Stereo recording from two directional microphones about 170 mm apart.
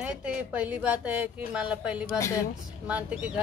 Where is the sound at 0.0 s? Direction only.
5° right (ahead or behind).